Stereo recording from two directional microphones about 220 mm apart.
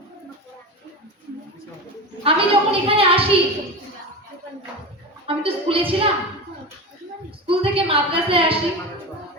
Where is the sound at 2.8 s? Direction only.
25° right (ahead or behind).